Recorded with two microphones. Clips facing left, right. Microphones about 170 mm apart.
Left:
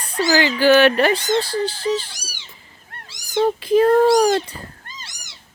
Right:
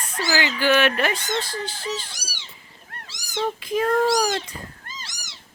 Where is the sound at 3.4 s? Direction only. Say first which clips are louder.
Left 8 dB; 30° left (ahead or behind).